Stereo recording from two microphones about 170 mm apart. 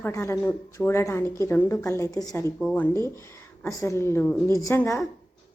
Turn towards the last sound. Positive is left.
turn(degrees=15)  # may be behind; listen again after turning